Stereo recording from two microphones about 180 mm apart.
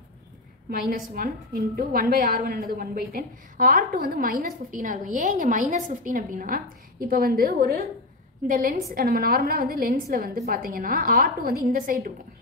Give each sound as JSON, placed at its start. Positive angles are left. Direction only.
{"t": 0.7, "sound": "a woman's voice", "side_deg": -55}
{"t": 4.9, "sound": "a woman's voice", "side_deg": -40}